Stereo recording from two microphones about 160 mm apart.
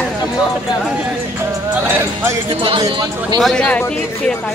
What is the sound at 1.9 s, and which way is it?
Speech, 15° right (ahead or behind).